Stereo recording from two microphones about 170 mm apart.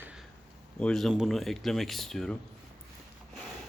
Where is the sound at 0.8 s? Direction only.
Centre (ahead or behind).